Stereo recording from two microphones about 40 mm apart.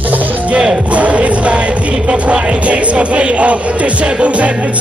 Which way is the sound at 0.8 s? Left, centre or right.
Right.